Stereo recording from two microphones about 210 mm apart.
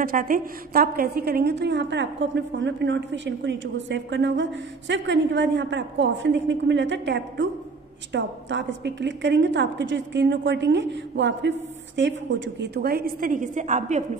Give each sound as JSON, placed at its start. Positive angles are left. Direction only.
{"t": 0.0, "sound": "a woman's voice", "side_deg": -40}